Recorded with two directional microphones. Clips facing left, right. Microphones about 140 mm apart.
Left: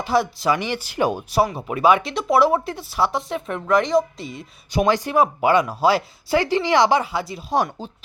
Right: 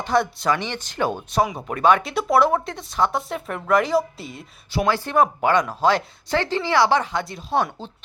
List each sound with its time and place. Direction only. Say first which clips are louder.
0.0 s speech: left 1 dB; 5° left (ahead or behind)
4.7 s speech: left 2 dB; 15° left (ahead or behind)